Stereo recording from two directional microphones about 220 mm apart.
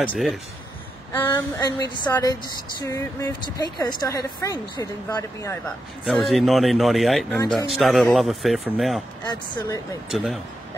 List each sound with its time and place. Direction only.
0.1 s speech: centre (ahead or behind)
1.1 s a woman's voice: 10° left (ahead or behind)
6.0 s speech: centre (ahead or behind)
9.2 s a woman's voice: 20° left (ahead or behind)
10.0 s speech: centre (ahead or behind)